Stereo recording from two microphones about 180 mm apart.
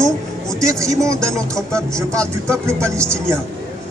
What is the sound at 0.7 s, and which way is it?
Speech, 15° right (ahead or behind).